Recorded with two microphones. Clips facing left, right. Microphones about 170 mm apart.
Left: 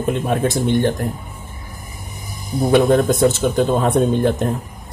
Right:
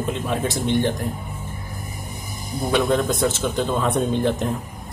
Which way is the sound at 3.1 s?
50° left (ahead or behind).